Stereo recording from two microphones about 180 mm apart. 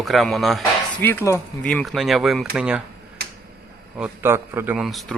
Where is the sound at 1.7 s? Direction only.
Centre (ahead or behind).